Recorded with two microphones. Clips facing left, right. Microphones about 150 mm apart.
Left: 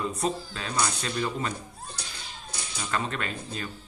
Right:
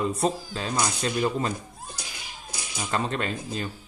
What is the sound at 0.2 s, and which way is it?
Speech, 35° right (ahead or behind).